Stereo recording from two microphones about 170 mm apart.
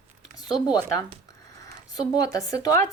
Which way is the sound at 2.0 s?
20° left (ahead or behind).